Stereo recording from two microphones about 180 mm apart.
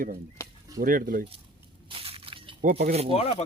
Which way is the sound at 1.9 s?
30° right (ahead or behind).